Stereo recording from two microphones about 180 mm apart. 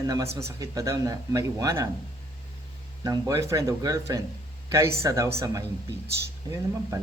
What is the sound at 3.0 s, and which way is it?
Speech, 20° right (ahead or behind).